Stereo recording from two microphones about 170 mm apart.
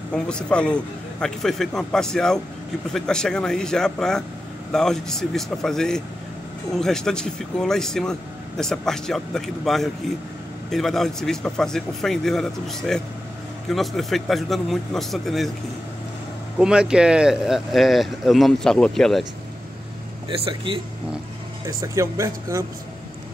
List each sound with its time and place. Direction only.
0.1 s speech: 5° left (ahead or behind)
16.5 s speech: 5° right (ahead or behind)
20.2 s a man's voice: 30° right (ahead or behind)
21.6 s speech: 15° right (ahead or behind)